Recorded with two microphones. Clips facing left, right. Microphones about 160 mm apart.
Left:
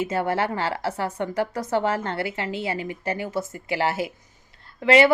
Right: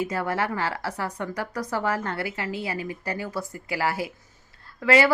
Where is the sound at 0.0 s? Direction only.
25° left (ahead or behind).